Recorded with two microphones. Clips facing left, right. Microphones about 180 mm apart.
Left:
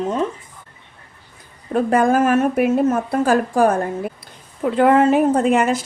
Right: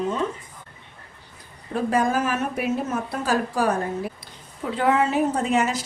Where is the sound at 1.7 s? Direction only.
55° left (ahead or behind).